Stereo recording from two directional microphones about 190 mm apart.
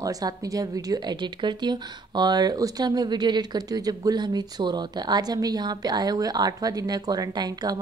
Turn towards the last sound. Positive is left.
turn(degrees=-20)  # may be behind; listen again after turning